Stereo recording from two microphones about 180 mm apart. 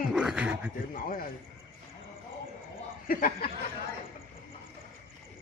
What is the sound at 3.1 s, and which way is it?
Chuckle, 50° left (ahead or behind).